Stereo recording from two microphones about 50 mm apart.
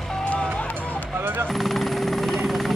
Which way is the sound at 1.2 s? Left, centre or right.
Right.